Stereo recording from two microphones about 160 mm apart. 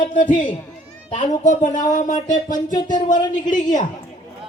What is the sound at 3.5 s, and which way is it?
Speech, 50° left (ahead or behind).